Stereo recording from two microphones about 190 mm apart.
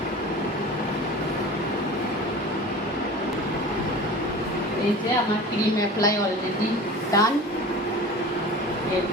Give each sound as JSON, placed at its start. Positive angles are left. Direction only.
{"t": 7.1, "sound": "a woman's voice", "side_deg": 20}